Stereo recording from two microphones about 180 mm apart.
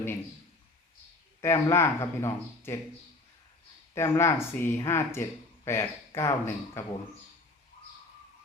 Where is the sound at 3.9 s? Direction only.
15° left (ahead or behind).